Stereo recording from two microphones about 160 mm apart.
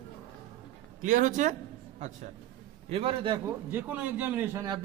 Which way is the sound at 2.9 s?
35° right (ahead or behind).